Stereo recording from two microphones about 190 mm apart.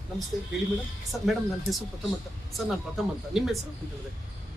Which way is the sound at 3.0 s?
Centre (ahead or behind).